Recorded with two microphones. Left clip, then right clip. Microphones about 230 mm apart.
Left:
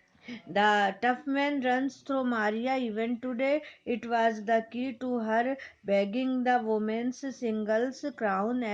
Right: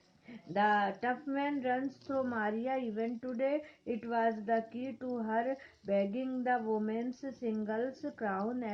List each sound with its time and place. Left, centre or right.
0.3 s speech: left